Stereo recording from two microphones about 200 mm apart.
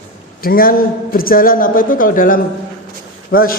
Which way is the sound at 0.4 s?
45° left (ahead or behind).